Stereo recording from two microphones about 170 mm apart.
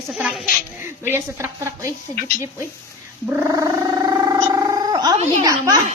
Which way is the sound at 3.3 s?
15° right (ahead or behind).